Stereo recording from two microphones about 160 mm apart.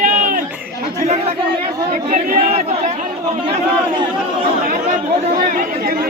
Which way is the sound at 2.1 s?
40° right (ahead or behind).